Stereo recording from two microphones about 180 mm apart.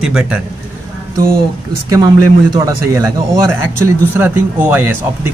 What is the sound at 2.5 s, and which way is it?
Speech, 15° right (ahead or behind).